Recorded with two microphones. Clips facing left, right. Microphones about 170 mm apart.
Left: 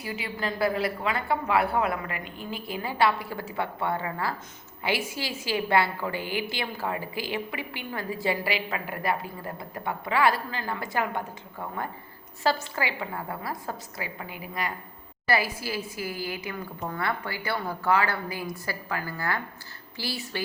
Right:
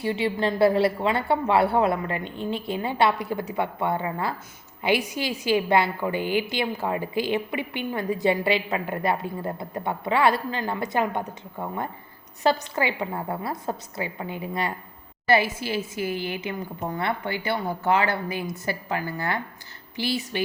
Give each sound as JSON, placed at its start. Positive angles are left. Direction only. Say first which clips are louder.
{"t": 0.0, "sound": "a woman's voice", "louder": "right 8 dB", "side_deg": -25}
{"t": 12.4, "sound": "a woman's voice", "louder": "right 4 dB", "side_deg": -20}